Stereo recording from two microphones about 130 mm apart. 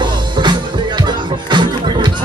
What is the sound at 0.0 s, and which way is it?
Music, 35° right (ahead or behind).